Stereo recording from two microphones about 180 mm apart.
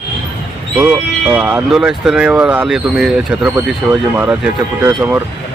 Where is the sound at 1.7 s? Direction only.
Centre (ahead or behind).